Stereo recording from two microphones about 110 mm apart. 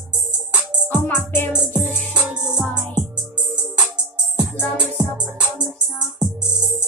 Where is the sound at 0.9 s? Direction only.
20° left (ahead or behind).